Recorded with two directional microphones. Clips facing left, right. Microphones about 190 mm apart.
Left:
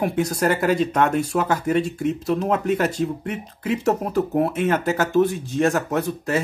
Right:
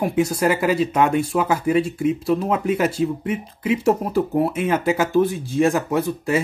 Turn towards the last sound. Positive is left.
turn(degrees=-10)  # may be behind; listen again after turning